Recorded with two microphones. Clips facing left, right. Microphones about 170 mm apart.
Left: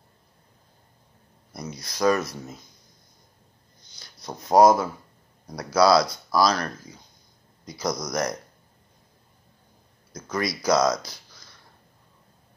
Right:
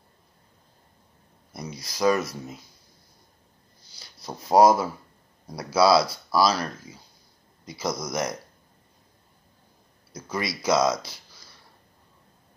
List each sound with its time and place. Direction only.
1.5 s speech: centre (ahead or behind)
2.0 s speech: 25° right (ahead or behind)
2.3 s speech: 5° right (ahead or behind)
3.9 s a sound: 5° right (ahead or behind)
4.5 s speech: centre (ahead or behind)
10.1 s speech: 5° right (ahead or behind)